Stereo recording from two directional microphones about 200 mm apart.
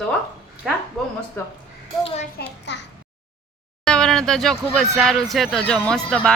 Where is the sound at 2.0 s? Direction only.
30° left (ahead or behind).